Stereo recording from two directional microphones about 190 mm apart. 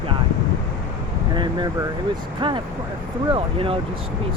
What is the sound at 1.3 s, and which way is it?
Speech, 25° right (ahead or behind).